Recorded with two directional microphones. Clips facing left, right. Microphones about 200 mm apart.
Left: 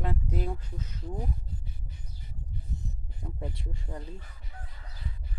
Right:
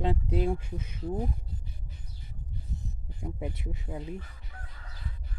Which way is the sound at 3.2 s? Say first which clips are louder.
Right 3 dB; 10° right (ahead or behind).